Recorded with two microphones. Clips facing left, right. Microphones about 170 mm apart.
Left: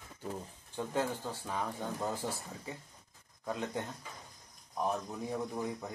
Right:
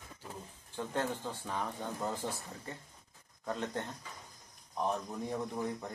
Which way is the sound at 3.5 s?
10° left (ahead or behind).